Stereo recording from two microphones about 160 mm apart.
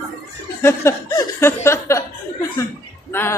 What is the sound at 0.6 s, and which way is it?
Speech, 15° left (ahead or behind).